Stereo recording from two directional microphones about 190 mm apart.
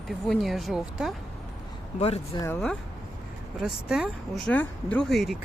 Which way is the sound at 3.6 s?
5° right (ahead or behind).